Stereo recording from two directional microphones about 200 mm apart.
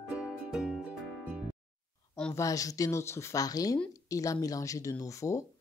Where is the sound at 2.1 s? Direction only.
15° left (ahead or behind).